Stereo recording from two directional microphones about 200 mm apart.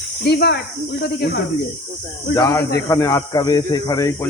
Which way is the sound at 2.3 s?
15° left (ahead or behind).